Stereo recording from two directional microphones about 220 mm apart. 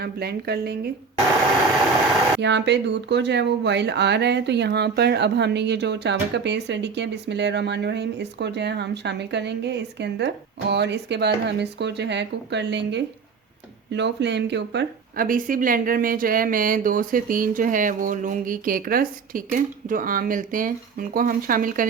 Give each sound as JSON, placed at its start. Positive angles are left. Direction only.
{"t": 0.0, "sound": "speech", "side_deg": -45}
{"t": 2.4, "sound": "speech", "side_deg": -50}